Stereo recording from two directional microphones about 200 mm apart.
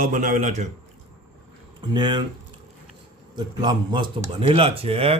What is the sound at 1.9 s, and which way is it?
Speech, 20° right (ahead or behind).